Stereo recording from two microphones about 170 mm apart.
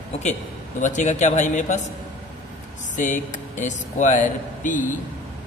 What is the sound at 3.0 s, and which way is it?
Speech, 45° left (ahead or behind).